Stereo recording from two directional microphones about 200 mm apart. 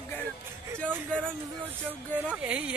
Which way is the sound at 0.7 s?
5° left (ahead or behind).